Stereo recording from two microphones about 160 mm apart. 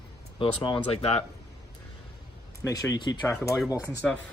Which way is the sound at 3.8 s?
5° left (ahead or behind).